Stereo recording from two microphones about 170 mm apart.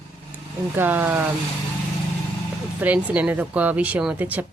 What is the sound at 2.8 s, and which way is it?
Speech, 10° right (ahead or behind).